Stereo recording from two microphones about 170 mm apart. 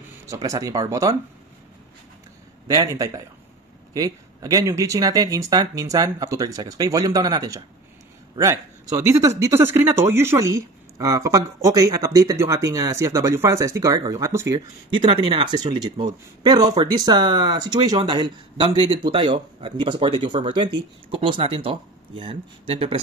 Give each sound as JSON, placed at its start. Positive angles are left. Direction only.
{"t": 0.3, "sound": "speech", "side_deg": -20}
{"t": 2.7, "sound": "a man's voice", "side_deg": -20}
{"t": 14.9, "sound": "speech", "side_deg": -30}